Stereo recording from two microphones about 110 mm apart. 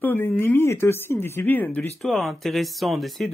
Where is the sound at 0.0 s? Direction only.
20° left (ahead or behind).